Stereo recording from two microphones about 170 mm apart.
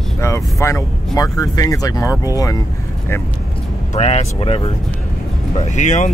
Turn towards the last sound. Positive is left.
turn(degrees=45)  # may be behind; listen again after turning